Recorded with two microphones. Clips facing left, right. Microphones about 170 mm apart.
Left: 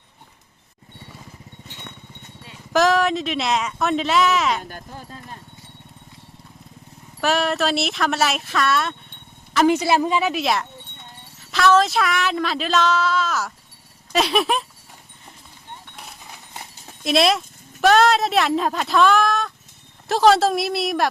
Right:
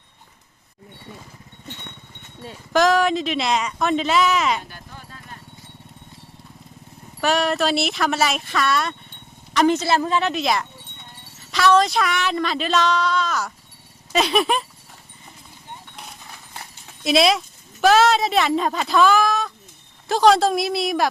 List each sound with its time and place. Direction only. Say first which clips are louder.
2.7 s speech: even; centre (ahead or behind)
4.7 s a sound: left 5 dB; 35° left (ahead or behind)
7.2 s speech: right 1 dB; centre (ahead or behind)
17.0 s speech: right 1 dB; centre (ahead or behind)